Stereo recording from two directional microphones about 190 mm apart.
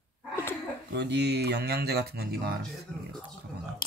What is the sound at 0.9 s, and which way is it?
Speech, 60° right (ahead or behind).